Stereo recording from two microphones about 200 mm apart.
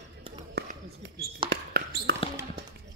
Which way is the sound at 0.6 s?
55° right (ahead or behind).